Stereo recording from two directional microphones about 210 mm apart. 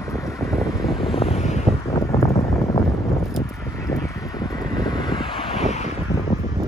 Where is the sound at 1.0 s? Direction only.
30° left (ahead or behind).